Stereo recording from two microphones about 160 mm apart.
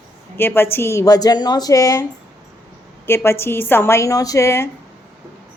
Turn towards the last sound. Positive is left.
turn(degrees=15)  # may be behind; listen again after turning